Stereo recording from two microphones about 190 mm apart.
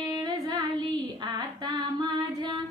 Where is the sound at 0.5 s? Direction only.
20° right (ahead or behind).